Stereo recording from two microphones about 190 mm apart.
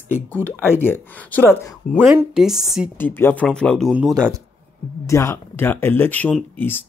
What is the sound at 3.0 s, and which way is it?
Speech, 10° left (ahead or behind).